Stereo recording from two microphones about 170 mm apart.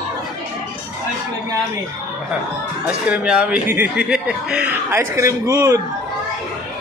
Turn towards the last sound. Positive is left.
turn(degrees=-20)  # may be behind; listen again after turning